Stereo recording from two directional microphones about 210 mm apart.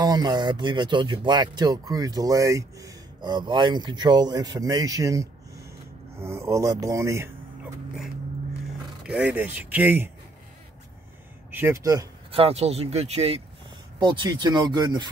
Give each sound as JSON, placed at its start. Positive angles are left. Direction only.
{"t": 0.0, "sound": "speech", "side_deg": -20}
{"t": 9.0, "sound": "speech", "side_deg": -5}
{"t": 11.5, "sound": "speech", "side_deg": -10}
{"t": 12.3, "sound": "speech", "side_deg": -30}